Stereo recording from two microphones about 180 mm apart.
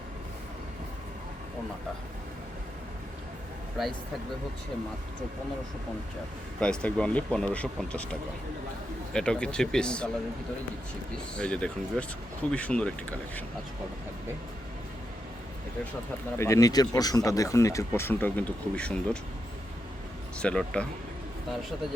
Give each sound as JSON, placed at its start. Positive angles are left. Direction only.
{"t": 6.6, "sound": "speech", "side_deg": 5}
{"t": 9.1, "sound": "speech", "side_deg": 5}
{"t": 11.3, "sound": "speech", "side_deg": 5}
{"t": 16.4, "sound": "speech", "side_deg": 15}
{"t": 20.4, "sound": "speech", "side_deg": 5}